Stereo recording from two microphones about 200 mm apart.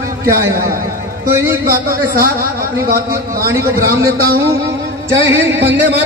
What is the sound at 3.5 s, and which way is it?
Speech, 15° right (ahead or behind).